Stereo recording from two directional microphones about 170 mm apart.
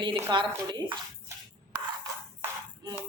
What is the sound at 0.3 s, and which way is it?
Speech, 25° right (ahead or behind).